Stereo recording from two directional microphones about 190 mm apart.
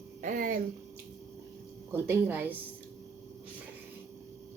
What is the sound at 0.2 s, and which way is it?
Speech, 45° right (ahead or behind).